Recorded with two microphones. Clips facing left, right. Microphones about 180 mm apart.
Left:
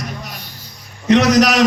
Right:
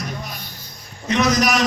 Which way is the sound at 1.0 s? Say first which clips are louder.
Left 6 dB; 75° left (ahead or behind).